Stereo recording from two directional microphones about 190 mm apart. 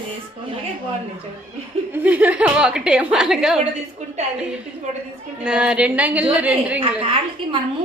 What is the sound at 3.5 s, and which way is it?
Speech, 35° right (ahead or behind).